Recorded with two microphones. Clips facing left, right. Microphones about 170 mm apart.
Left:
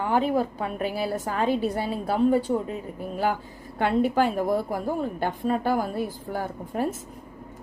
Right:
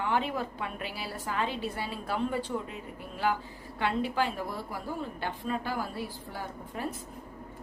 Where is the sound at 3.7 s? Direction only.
50° left (ahead or behind).